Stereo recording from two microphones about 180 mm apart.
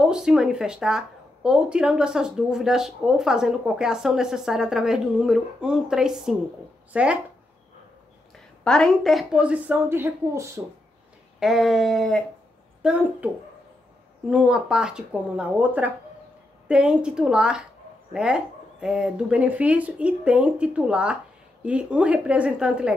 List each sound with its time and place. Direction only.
0.0 s speech: 5° right (ahead or behind)
8.6 s speech: 5° left (ahead or behind); by 10.6 s 15° right (ahead or behind)
11.3 s speech: centre (ahead or behind)
14.3 s speech: 5° right (ahead or behind)